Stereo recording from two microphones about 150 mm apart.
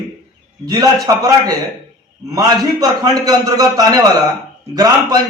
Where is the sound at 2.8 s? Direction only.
25° right (ahead or behind).